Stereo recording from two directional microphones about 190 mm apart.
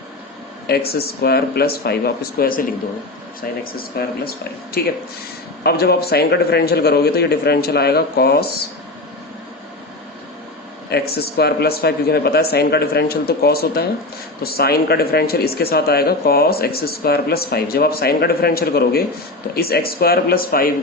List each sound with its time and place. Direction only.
0.9 s speech: 55° left (ahead or behind)
10.8 s speech: 55° left (ahead or behind)